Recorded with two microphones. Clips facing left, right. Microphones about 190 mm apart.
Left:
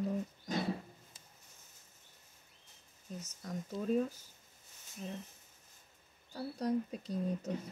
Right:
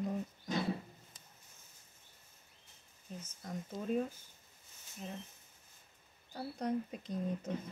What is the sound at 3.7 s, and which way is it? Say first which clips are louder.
Speech: left 3 dB; 40° left (ahead or behind).